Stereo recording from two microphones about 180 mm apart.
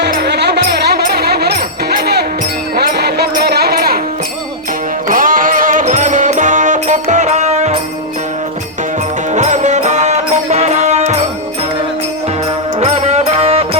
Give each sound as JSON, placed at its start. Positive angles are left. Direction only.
{"t": 0.0, "sound": "music", "side_deg": -65}
{"t": 2.7, "sound": "music", "side_deg": -65}
{"t": 5.0, "sound": "music", "side_deg": -50}
{"t": 9.3, "sound": "music", "side_deg": -40}
{"t": 12.8, "sound": "music", "side_deg": -40}